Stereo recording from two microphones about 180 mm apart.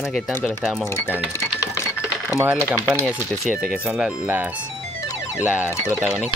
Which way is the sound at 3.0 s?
Centre (ahead or behind).